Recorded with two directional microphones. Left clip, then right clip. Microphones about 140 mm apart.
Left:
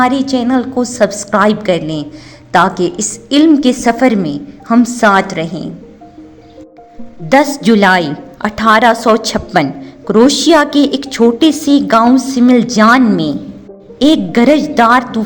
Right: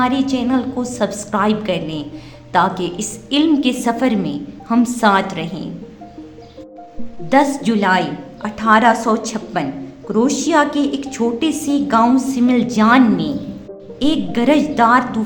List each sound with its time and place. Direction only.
0.0 s a woman's voice: 45° left (ahead or behind)
7.3 s a woman's voice: 55° left (ahead or behind)